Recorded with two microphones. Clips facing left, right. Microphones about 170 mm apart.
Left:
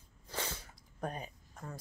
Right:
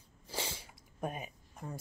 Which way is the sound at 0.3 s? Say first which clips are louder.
Even; 10° right (ahead or behind).